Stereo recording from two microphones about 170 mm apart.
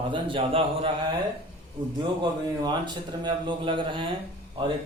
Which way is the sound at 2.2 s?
25° right (ahead or behind).